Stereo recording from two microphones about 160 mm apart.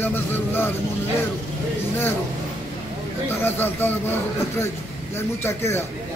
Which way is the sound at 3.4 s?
15° left (ahead or behind).